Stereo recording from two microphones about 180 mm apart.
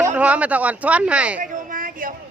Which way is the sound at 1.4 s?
50° right (ahead or behind).